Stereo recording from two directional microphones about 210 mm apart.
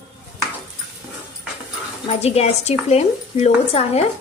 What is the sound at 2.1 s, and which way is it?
Speech, 30° left (ahead or behind).